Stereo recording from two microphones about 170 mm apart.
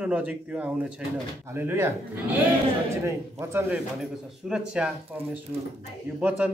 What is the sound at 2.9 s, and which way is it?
A man's voice, 15° right (ahead or behind).